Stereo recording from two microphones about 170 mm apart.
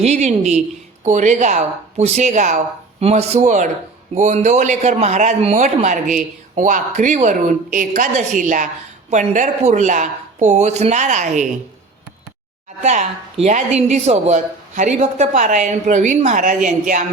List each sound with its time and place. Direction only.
0.0 s a man's voice: 40° right (ahead or behind)
12.8 s a man's voice: 45° right (ahead or behind)